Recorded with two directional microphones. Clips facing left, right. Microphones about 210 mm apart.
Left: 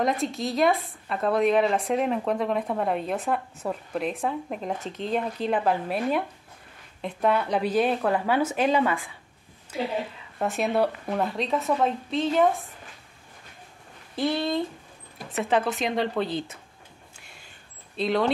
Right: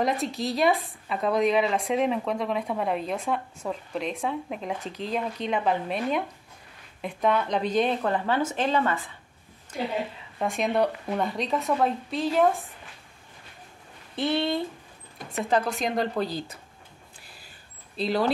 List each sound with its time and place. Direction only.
0.0 s speech: centre (ahead or behind)
10.4 s speech: 5° left (ahead or behind)
14.3 s speech: 25° right (ahead or behind)
15.1 s speech: 5° left (ahead or behind)
17.9 s speech: centre (ahead or behind)